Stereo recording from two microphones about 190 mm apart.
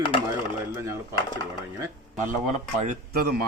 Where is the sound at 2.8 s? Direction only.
50° right (ahead or behind).